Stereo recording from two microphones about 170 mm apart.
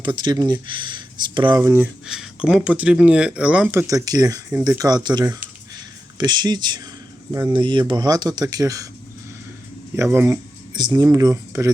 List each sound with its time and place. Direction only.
0.0 s speech: 25° right (ahead or behind)
2.0 s speech: 5° right (ahead or behind); by 8.9 s 20° right (ahead or behind)
9.9 s speech: 15° right (ahead or behind)